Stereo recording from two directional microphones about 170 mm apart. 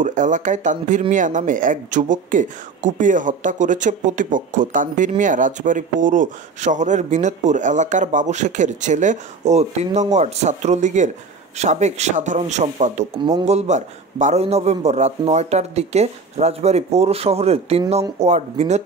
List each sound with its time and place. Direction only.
0.0 s a man's voice: 45° right (ahead or behind)